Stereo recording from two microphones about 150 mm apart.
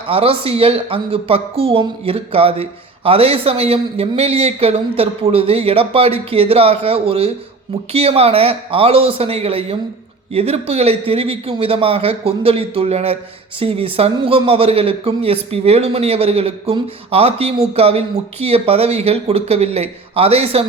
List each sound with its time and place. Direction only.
0.1 s a woman's voice: 40° right (ahead or behind)